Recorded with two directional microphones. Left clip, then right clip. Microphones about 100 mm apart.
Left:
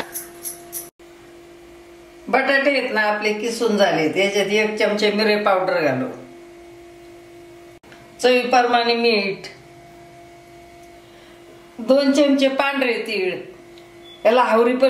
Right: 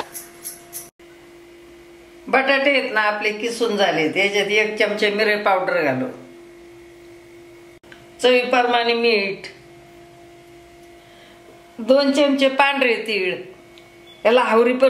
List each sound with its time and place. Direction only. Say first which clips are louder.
2.3 s a woman's voice: right 1 dB; 15° right (ahead or behind)
8.2 s a woman's voice: even; 10° right (ahead or behind)
11.8 s a woman's voice: even; 20° right (ahead or behind)